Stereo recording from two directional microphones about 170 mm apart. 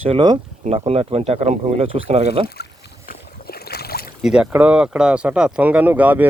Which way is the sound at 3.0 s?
65° left (ahead or behind).